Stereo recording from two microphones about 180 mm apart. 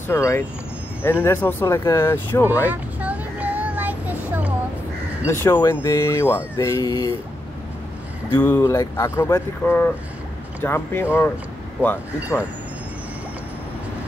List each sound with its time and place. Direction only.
0.1 s speech: 15° left (ahead or behind)
2.6 s child singing: 10° right (ahead or behind)
5.2 s speech: 15° left (ahead or behind)
8.4 s speech: 15° left (ahead or behind)